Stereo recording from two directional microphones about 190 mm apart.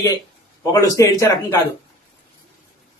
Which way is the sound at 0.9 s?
15° left (ahead or behind).